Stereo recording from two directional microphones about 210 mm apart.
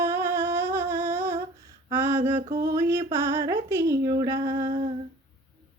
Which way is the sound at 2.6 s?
15° right (ahead or behind).